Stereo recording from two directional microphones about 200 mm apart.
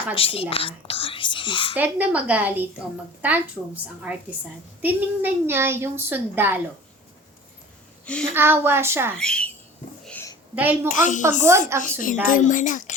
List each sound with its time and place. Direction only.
0.1 s speech: 30° left (ahead or behind)
1.7 s a woman's voice: 10° right (ahead or behind)
8.0 s a woman's voice: 5° left (ahead or behind)
8.3 s a woman's voice: 10° right (ahead or behind)
9.1 s a woman's voice: 5° left (ahead or behind)
10.1 s a sound: 10° left (ahead or behind)
10.5 s a woman's voice: 10° right (ahead or behind)
10.8 s a woman's voice: 40° left (ahead or behind)
11.5 s a woman's voice: 15° right (ahead or behind)
11.8 s a woman's voice: 40° left (ahead or behind)